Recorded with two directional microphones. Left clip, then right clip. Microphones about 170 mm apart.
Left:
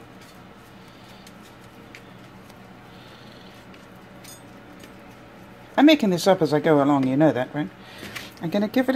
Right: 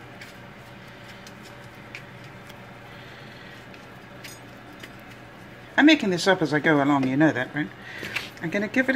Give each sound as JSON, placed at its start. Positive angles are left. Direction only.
{"t": 5.8, "sound": "speech", "side_deg": 30}